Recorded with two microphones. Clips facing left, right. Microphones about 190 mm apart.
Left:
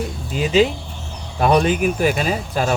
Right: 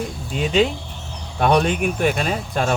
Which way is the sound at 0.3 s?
Centre (ahead or behind).